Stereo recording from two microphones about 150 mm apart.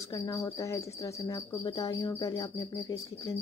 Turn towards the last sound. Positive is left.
turn(degrees=25)  # may be behind; listen again after turning